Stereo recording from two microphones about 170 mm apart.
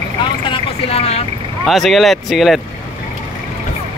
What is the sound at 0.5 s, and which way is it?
Vehicle, 35° left (ahead or behind).